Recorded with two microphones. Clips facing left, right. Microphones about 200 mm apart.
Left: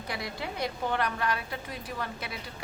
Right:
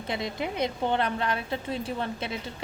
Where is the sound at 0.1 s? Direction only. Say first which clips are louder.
Right 5 dB; 20° right (ahead or behind).